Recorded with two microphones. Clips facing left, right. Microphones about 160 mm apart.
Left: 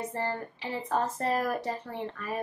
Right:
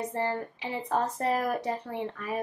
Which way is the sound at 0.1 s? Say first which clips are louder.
Right 2 dB; 15° right (ahead or behind).